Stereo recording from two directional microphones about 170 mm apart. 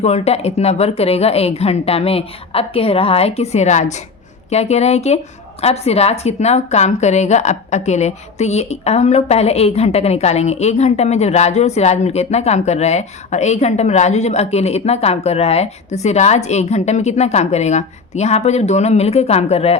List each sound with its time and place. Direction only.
0.0 s a woman's voice: 40° left (ahead or behind)